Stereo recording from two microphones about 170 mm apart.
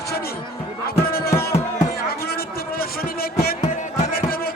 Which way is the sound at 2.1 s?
65° left (ahead or behind).